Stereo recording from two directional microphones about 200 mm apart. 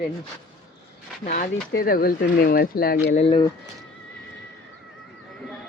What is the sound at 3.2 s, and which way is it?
Speech, 25° left (ahead or behind).